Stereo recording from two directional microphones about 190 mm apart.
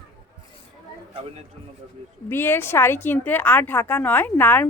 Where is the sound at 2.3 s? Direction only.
10° left (ahead or behind).